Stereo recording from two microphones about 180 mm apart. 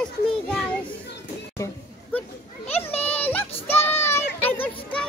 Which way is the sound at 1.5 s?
15° left (ahead or behind).